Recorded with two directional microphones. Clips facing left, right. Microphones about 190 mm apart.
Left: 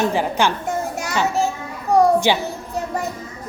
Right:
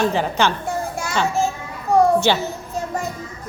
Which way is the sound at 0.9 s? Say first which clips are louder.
Right 1 dB; 15° left (ahead or behind).